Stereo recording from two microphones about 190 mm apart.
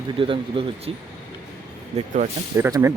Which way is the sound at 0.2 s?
25° right (ahead or behind).